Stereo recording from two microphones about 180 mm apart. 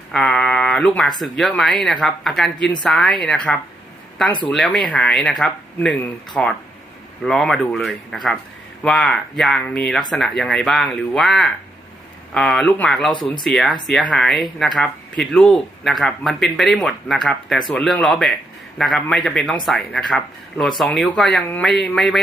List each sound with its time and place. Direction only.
0.1 s speech: 5° left (ahead or behind)